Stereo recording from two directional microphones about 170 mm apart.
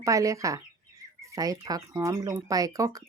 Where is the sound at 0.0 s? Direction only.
20° right (ahead or behind).